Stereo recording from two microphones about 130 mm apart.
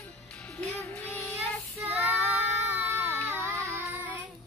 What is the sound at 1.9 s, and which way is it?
Child singing, 15° right (ahead or behind).